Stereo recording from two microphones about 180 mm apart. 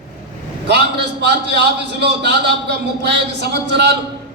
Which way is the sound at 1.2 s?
70° right (ahead or behind).